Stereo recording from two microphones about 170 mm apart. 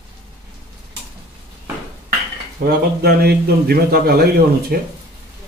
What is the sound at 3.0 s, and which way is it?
A man's voice, 70° right (ahead or behind).